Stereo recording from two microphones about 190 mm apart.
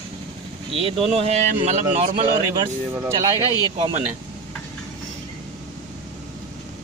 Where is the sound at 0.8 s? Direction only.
35° right (ahead or behind).